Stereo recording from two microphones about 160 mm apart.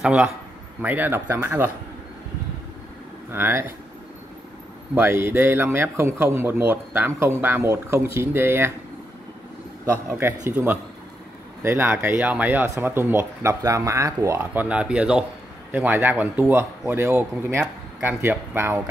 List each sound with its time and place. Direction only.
0.0 s a man's voice: 5° right (ahead or behind)
3.3 s a man's voice: 15° right (ahead or behind)
4.9 s a man's voice: 15° right (ahead or behind)
10.0 s a man's voice: 15° right (ahead or behind)